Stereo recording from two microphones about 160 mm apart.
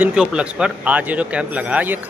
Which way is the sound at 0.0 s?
5° right (ahead or behind).